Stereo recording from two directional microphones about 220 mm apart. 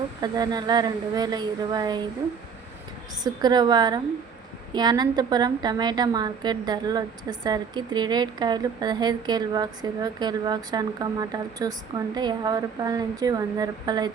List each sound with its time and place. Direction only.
0.2 s a woman's voice: 20° right (ahead or behind)
3.4 s a woman's voice: 20° right (ahead or behind)